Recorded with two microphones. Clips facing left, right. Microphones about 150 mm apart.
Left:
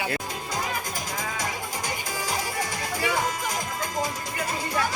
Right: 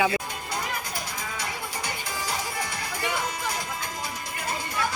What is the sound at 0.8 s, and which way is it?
Music, 45° left (ahead or behind).